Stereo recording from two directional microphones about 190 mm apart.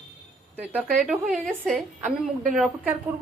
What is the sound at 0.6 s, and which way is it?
A woman's voice, 10° right (ahead or behind).